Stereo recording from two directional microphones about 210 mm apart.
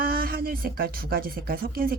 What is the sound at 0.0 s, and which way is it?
Speech, 45° right (ahead or behind).